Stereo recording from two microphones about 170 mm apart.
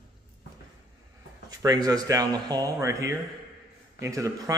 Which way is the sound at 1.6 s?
20° right (ahead or behind).